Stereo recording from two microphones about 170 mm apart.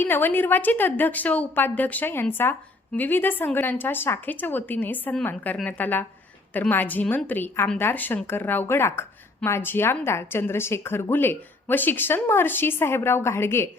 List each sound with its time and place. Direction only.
0.0 s speech: 10° left (ahead or behind)